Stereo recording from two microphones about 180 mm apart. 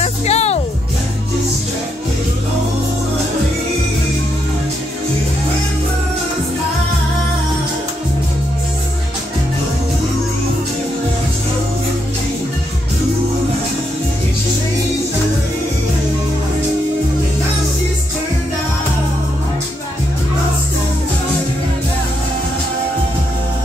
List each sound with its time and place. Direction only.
0.0 s music: 35° left (ahead or behind)